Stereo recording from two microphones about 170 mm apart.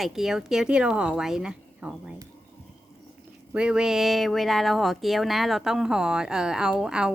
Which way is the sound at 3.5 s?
5° right (ahead or behind).